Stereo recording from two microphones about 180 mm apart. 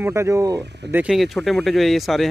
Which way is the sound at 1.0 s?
Centre (ahead or behind).